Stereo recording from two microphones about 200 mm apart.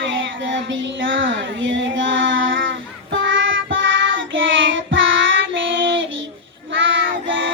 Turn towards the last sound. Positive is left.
turn(degrees=-70)  # may be behind; listen again after turning